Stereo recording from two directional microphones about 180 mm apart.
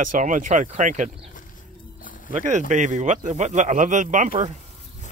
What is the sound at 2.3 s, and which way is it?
Speech, 40° right (ahead or behind).